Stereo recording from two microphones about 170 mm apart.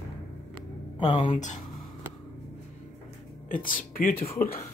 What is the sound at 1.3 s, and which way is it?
Speech, 45° left (ahead or behind).